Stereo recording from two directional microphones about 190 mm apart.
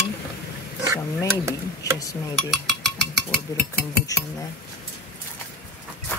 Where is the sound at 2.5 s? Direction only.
Centre (ahead or behind).